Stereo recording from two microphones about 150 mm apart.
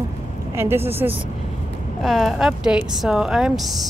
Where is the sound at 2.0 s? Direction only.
Centre (ahead or behind).